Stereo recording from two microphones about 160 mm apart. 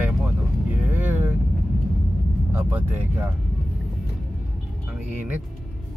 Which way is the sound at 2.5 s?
10° right (ahead or behind).